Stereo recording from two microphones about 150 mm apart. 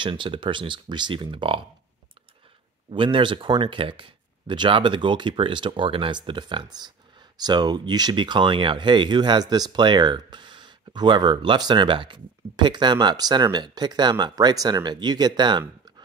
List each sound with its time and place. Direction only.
0.0 s speech: 35° right (ahead or behind)
2.9 s speech: 35° right (ahead or behind)